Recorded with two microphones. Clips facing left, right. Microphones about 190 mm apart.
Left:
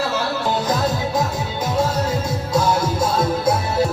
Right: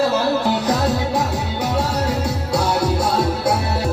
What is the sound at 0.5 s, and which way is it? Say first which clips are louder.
Music: right 2 dB; 70° right (ahead or behind).